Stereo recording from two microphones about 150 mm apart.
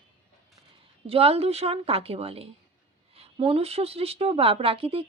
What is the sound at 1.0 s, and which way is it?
A woman's voice, 40° right (ahead or behind).